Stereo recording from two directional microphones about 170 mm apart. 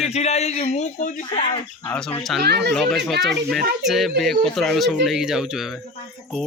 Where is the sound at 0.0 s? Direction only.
40° left (ahead or behind).